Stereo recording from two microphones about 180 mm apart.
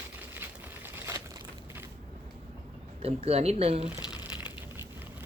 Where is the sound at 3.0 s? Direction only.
35° right (ahead or behind).